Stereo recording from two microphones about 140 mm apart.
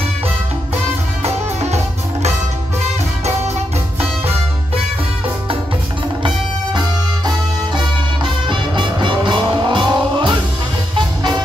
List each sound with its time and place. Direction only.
1.2 s music: 50° right (ahead or behind)
7.2 s music: 35° right (ahead or behind)